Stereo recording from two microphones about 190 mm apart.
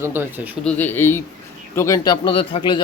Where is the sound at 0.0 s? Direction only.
10° right (ahead or behind).